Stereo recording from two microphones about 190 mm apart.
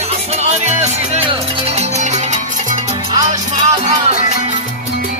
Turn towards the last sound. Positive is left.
turn(degrees=-35)  # may be behind; listen again after turning